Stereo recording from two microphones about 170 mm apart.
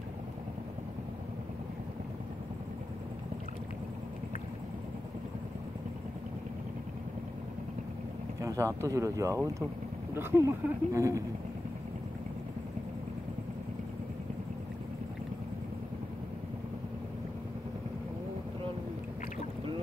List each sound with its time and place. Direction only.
8.4 s speech: 20° right (ahead or behind)